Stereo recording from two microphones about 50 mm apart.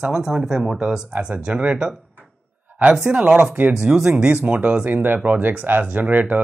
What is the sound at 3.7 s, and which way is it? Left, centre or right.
Speech, centre.